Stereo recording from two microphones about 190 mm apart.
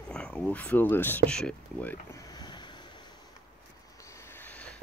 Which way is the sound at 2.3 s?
25° left (ahead or behind).